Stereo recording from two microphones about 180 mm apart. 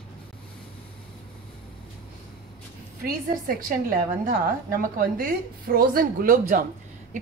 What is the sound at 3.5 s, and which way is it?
Speech, 50° right (ahead or behind).